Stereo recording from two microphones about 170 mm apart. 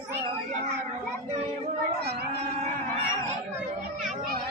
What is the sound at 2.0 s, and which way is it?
Speech, 75° right (ahead or behind).